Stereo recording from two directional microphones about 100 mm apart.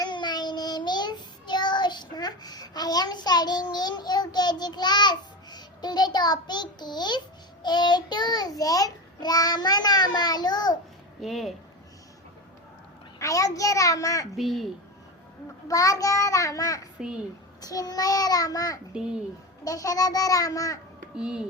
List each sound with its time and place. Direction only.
0.0 s child singing: 50° left (ahead or behind)
11.2 s speech: centre (ahead or behind)
13.1 s a child's voice: 35° left (ahead or behind)
14.3 s speech: centre (ahead or behind)
15.6 s a child's voice: 35° left (ahead or behind)
18.9 s a child's voice: 10° right (ahead or behind)
19.6 s a child's voice: 35° left (ahead or behind)
21.2 s a child's voice: 10° right (ahead or behind)